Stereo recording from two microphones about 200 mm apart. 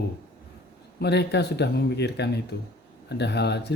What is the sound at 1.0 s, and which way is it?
Speech, 55° left (ahead or behind).